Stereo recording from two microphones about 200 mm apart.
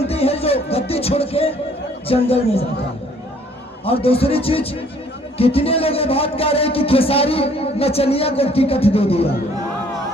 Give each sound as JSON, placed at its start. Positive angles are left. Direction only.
{"t": 0.0, "sound": "music", "side_deg": 30}
{"t": 2.0, "sound": "speech", "side_deg": 30}
{"t": 3.8, "sound": "speech", "side_deg": 30}